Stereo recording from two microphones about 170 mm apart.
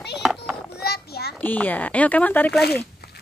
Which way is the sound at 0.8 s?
70° left (ahead or behind).